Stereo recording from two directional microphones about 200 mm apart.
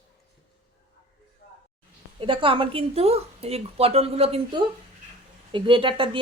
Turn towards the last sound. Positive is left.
turn(degrees=-25)  # may be behind; listen again after turning